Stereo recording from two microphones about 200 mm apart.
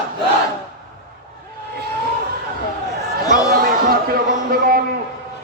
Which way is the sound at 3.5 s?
45° right (ahead or behind).